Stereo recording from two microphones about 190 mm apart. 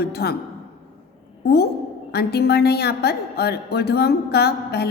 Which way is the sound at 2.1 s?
60° left (ahead or behind).